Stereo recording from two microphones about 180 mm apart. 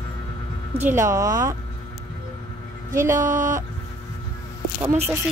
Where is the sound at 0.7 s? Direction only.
10° right (ahead or behind).